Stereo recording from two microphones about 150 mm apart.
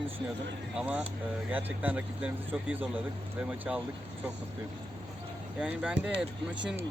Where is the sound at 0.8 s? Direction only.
10° right (ahead or behind).